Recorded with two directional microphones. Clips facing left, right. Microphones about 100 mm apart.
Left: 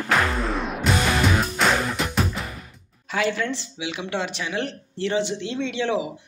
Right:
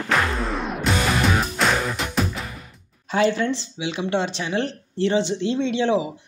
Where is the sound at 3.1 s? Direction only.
30° right (ahead or behind).